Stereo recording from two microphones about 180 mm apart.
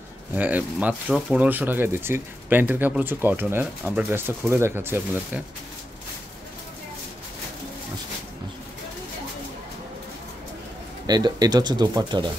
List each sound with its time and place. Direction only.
0.4 s speech: 10° right (ahead or behind)
11.1 s speech: 20° right (ahead or behind)